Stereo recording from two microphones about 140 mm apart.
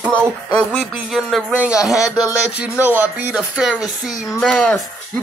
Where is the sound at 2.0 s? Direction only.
25° left (ahead or behind).